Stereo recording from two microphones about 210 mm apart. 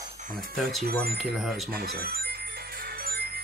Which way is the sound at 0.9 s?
45° right (ahead or behind).